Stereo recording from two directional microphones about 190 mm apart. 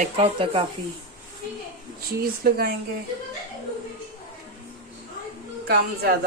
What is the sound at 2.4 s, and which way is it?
Speech, 55° right (ahead or behind).